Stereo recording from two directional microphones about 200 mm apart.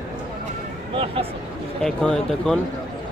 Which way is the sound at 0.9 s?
30° right (ahead or behind).